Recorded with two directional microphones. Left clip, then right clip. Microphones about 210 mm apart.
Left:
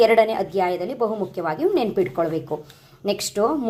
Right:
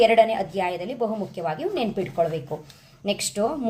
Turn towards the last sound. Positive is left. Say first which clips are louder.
# left 3 dB
turn(degrees=20)  # may be behind; listen again after turning